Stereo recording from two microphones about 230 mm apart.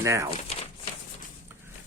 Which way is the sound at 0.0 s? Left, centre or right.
Centre.